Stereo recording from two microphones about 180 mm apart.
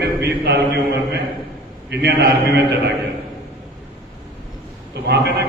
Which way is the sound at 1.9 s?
65° right (ahead or behind).